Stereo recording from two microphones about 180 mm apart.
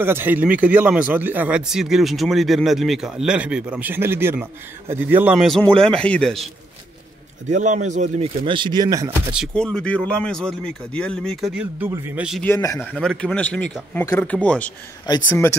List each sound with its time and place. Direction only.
0.0 s speech: 10° right (ahead or behind)
7.4 s speech: 45° right (ahead or behind)
8.5 s speech: 25° right (ahead or behind)
9.3 s speech: centre (ahead or behind)
12.4 s speech: 20° left (ahead or behind)
12.7 s speech: 5° left (ahead or behind)